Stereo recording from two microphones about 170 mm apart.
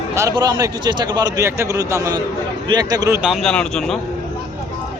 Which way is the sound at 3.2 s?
Centre (ahead or behind).